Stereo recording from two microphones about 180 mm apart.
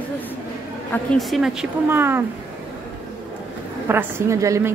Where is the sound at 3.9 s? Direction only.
15° right (ahead or behind).